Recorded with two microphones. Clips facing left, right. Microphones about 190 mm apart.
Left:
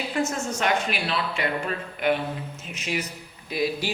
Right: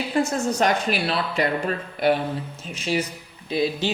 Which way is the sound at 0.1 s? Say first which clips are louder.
Right 6 dB; 35° right (ahead or behind).